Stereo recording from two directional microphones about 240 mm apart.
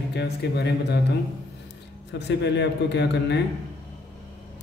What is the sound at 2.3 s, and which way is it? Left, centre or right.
Speech, left.